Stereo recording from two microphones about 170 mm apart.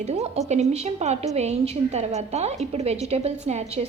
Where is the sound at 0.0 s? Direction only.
40° right (ahead or behind).